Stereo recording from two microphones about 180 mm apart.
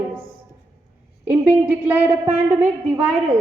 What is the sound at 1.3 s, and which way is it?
A man's voice, 10° right (ahead or behind).